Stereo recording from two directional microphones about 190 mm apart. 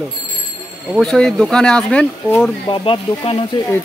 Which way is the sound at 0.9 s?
5° left (ahead or behind).